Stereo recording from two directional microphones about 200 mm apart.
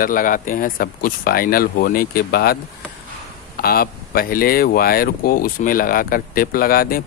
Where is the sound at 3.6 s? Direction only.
50° left (ahead or behind).